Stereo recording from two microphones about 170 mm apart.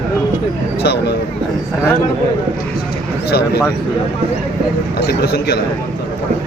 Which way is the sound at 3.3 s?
70° left (ahead or behind).